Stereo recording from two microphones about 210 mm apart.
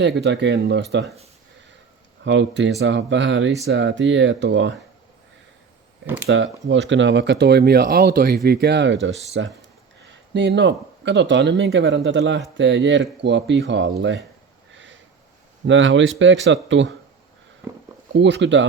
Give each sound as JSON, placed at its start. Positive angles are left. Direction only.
{"t": 0.0, "sound": "speech", "side_deg": -55}
{"t": 2.2, "sound": "speech", "side_deg": -60}
{"t": 6.2, "sound": "speech", "side_deg": -65}
{"t": 15.6, "sound": "speech", "side_deg": -65}
{"t": 18.1, "sound": "speech", "side_deg": -60}